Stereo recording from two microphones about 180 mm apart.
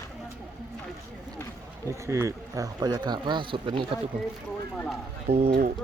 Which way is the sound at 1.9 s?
15° right (ahead or behind).